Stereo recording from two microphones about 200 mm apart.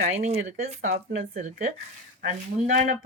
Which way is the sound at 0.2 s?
30° right (ahead or behind).